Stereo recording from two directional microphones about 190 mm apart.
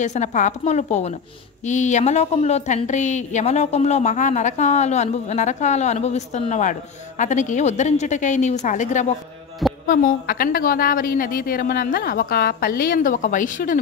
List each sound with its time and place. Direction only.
0.0 s a woman's voice: 40° left (ahead or behind)